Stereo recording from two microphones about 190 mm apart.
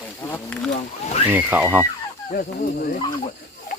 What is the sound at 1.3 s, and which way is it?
Speech, 10° right (ahead or behind).